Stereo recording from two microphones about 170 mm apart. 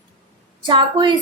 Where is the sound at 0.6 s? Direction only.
30° right (ahead or behind).